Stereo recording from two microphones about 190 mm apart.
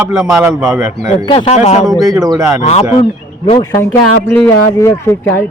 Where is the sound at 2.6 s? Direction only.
35° left (ahead or behind).